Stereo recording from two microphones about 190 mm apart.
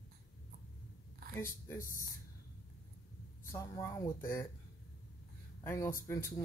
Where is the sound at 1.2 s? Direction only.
50° right (ahead or behind).